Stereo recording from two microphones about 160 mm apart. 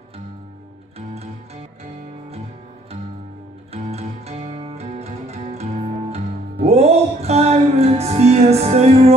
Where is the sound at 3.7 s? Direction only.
40° right (ahead or behind).